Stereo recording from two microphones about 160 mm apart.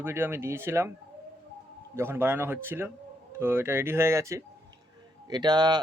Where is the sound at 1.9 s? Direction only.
15° right (ahead or behind).